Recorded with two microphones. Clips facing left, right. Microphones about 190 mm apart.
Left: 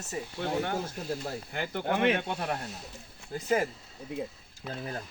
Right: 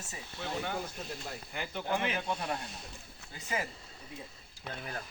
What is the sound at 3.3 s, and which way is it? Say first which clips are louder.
Speech: left 9 dB; 45° left (ahead or behind).